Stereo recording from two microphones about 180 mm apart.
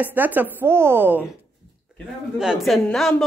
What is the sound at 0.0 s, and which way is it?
A woman's voice, 10° right (ahead or behind).